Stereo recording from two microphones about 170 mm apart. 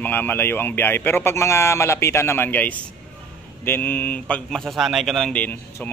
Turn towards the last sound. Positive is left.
turn(degrees=10)  # may be behind; listen again after turning